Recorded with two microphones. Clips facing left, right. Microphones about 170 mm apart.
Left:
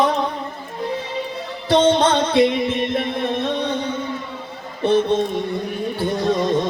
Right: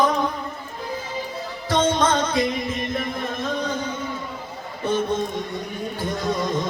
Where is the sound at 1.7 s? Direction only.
70° left (ahead or behind).